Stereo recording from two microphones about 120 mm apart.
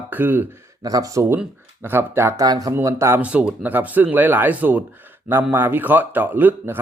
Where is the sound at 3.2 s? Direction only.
10° right (ahead or behind).